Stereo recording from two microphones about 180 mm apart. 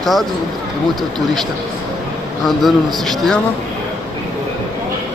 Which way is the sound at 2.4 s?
Centre (ahead or behind).